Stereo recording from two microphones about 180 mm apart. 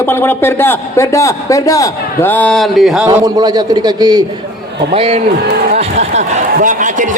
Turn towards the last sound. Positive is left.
turn(degrees=-45)  # may be behind; listen again after turning